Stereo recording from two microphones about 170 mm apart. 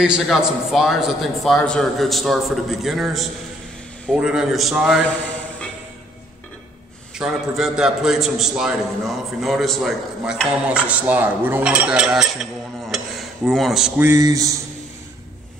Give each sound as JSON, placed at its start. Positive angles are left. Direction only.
{"t": 0.0, "sound": "a man's voice", "side_deg": -5}
{"t": 7.2, "sound": "a man's voice", "side_deg": -5}
{"t": 12.9, "sound": "a sound", "side_deg": 0}
{"t": 13.9, "sound": "speech", "side_deg": -15}